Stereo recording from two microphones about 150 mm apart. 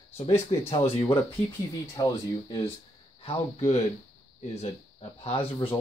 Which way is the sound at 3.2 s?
45° left (ahead or behind).